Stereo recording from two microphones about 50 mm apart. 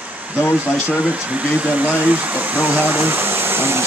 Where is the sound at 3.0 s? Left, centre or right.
Right.